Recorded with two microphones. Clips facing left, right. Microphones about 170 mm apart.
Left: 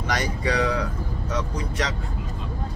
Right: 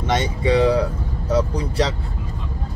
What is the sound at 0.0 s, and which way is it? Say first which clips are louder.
Speech: right 5 dB; 25° right (ahead or behind).